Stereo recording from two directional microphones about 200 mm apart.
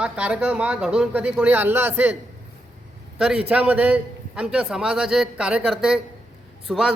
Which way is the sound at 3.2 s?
5° right (ahead or behind).